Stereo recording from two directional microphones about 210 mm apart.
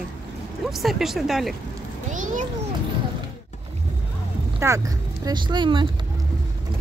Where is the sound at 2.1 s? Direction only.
35° right (ahead or behind).